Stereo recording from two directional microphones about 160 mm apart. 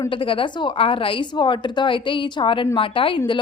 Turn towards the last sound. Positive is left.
turn(degrees=30)  # may be behind; listen again after turning